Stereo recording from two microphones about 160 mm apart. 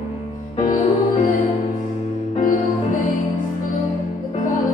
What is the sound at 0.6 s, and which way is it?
Music, 60° left (ahead or behind).